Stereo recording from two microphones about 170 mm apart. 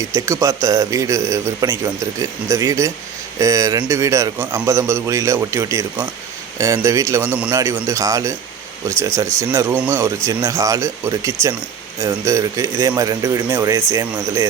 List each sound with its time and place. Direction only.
0.0 s a man's voice: 20° right (ahead or behind)